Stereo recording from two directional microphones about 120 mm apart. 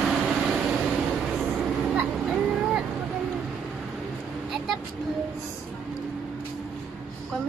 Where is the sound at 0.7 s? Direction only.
5° right (ahead or behind).